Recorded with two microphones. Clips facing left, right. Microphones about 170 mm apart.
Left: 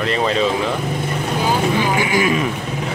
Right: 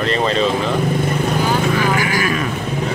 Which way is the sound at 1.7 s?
20° left (ahead or behind).